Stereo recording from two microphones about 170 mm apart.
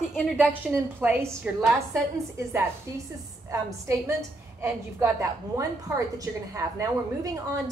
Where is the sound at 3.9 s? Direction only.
15° right (ahead or behind).